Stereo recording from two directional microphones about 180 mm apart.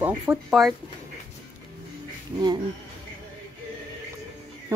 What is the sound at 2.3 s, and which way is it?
Speech, 25° right (ahead or behind).